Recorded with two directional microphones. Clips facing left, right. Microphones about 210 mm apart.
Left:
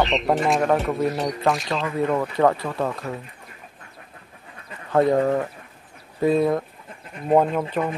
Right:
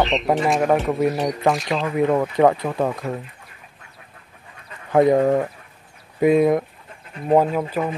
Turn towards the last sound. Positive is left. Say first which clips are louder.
# right 1 dB
turn(degrees=-5)  # may be behind; listen again after turning